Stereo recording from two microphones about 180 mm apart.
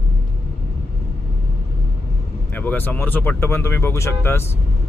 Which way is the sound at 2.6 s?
10° left (ahead or behind).